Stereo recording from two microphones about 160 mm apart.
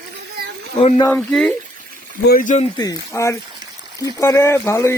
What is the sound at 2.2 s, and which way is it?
Speech, 60° left (ahead or behind).